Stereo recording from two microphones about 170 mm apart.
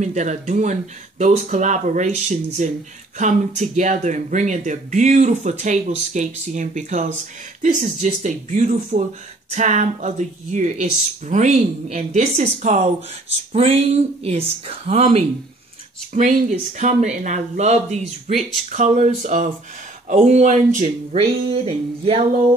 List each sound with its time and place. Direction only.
0.0 s speech: 45° right (ahead or behind)